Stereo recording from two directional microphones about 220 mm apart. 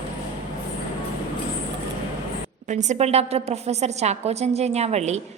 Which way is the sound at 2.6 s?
35° right (ahead or behind).